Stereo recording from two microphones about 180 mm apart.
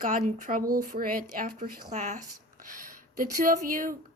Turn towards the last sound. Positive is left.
turn(degrees=-50)  # may be behind; listen again after turning